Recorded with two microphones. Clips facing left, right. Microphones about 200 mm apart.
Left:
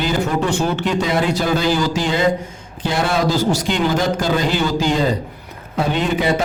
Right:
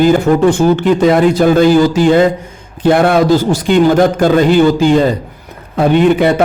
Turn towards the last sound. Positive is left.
turn(degrees=-55)  # may be behind; listen again after turning